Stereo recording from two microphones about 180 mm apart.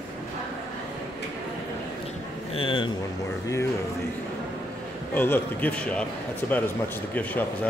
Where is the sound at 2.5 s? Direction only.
30° left (ahead or behind).